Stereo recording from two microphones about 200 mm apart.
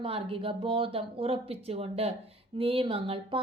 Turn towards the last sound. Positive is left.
turn(degrees=-25)  # may be behind; listen again after turning